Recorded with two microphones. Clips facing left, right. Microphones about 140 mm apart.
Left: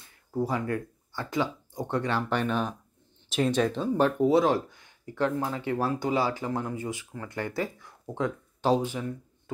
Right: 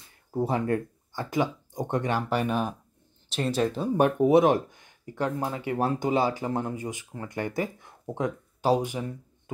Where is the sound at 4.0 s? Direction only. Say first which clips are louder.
Right 3 dB; 20° right (ahead or behind).